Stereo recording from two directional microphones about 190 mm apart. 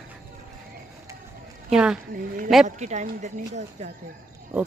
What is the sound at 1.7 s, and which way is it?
Speech, 5° right (ahead or behind).